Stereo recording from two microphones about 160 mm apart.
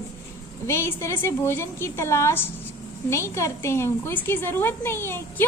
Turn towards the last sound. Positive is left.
turn(degrees=15)  # may be behind; listen again after turning